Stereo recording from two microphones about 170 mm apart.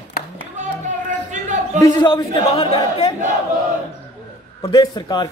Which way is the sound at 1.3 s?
45° right (ahead or behind).